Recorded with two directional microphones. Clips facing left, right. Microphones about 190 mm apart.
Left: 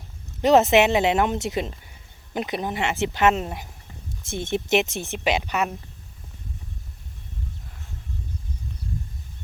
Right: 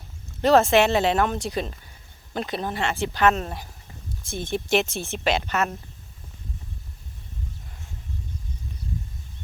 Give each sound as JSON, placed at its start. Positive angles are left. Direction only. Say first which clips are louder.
{"t": 0.4, "sound": "speech", "louder": "left 1 dB", "side_deg": 20}